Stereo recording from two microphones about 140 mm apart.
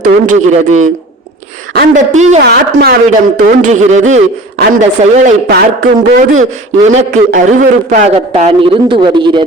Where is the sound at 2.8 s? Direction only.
80° right.